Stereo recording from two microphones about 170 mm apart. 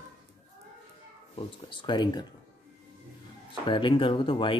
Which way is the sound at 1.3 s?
30° left (ahead or behind).